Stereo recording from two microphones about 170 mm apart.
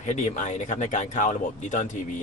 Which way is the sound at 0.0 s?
45° left (ahead or behind).